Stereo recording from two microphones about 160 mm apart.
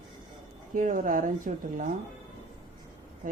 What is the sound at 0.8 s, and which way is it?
Speech, 55° right (ahead or behind).